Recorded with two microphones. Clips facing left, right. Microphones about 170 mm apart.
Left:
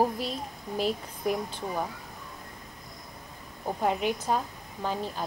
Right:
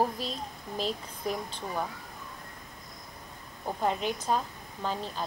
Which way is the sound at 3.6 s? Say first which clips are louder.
Left 2 dB; 10° left (ahead or behind).